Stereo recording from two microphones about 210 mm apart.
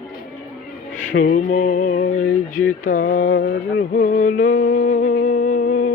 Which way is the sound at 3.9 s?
40° left (ahead or behind).